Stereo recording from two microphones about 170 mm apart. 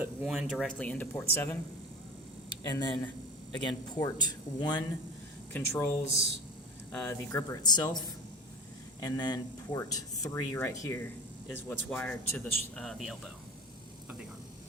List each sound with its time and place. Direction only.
0.0 s speech: 5° right (ahead or behind)
0.8 s speech: 10° left (ahead or behind)
2.5 s speech: 25° left (ahead or behind)
5.5 s speech: 15° left (ahead or behind)